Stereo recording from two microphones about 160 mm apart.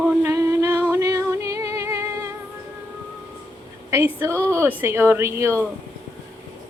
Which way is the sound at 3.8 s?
15° right (ahead or behind).